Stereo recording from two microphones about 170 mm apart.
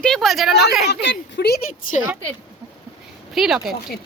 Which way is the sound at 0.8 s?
80° left.